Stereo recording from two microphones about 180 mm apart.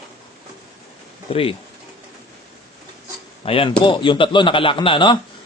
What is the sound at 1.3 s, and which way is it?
Speech, 30° left (ahead or behind).